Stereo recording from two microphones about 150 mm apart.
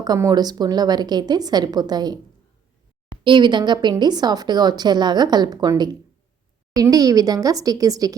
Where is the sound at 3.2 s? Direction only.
30° right (ahead or behind).